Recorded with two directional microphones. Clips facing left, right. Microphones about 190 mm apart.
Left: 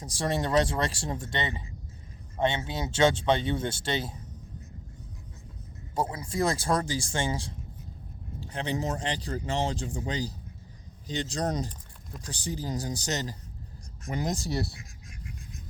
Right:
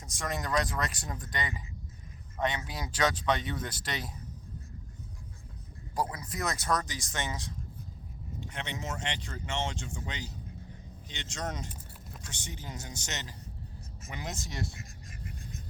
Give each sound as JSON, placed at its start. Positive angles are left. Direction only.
{"t": 0.0, "sound": "speech", "side_deg": 30}
{"t": 5.9, "sound": "speech", "side_deg": 25}
{"t": 14.8, "sound": "a sound", "side_deg": 0}